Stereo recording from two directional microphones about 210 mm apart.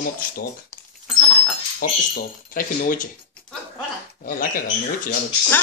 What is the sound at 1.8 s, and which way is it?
Speech, 40° left (ahead or behind).